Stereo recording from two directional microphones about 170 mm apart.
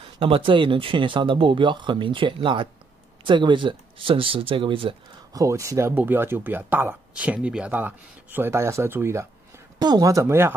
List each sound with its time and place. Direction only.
0.0 s speech: 30° right (ahead or behind)
5.4 s speech: 20° right (ahead or behind)